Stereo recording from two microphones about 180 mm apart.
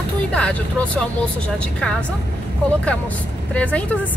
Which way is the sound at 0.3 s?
5° left (ahead or behind).